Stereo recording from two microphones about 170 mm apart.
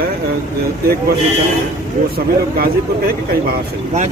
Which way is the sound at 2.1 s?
60° right (ahead or behind).